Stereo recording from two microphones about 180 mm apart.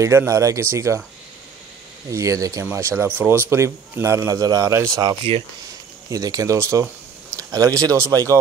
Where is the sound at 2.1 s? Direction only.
20° right (ahead or behind).